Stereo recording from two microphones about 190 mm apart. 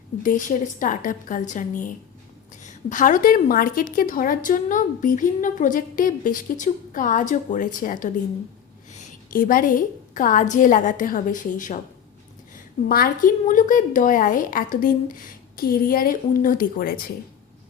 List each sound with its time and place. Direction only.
0.2 s a woman's voice: 45° left (ahead or behind)